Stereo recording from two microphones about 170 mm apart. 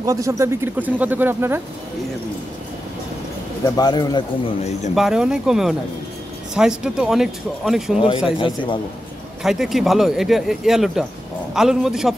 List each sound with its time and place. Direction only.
0.0 s speech: 20° right (ahead or behind)
3.6 s a man's voice: 20° left (ahead or behind)
4.9 s speech: 5° right (ahead or behind)
8.4 s a man's voice: 30° left (ahead or behind)
9.4 s speech: centre (ahead or behind)